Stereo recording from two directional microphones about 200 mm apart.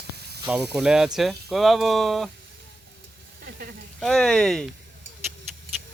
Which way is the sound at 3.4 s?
50° right (ahead or behind).